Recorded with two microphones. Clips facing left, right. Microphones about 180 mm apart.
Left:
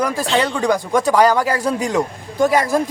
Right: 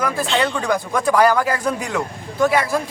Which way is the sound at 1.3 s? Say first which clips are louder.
Left 2 dB; 35° left (ahead or behind).